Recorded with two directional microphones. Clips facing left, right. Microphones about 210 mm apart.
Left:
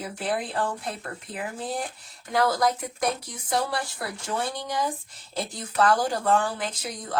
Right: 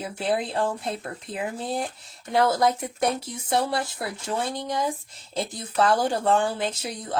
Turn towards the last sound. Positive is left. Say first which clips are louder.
# right 3 dB
turn(degrees=-25)  # may be behind; listen again after turning